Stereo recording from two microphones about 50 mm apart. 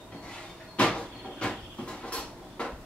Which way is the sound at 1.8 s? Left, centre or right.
Centre.